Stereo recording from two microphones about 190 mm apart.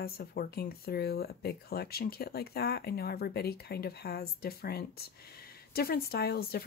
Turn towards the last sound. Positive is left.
turn(degrees=55)  # may be behind; listen again after turning